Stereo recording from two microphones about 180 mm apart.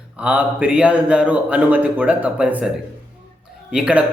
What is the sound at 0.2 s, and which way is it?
A man's voice, 10° right (ahead or behind).